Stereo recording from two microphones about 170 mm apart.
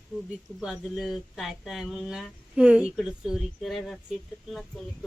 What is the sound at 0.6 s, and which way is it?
Speech, centre (ahead or behind).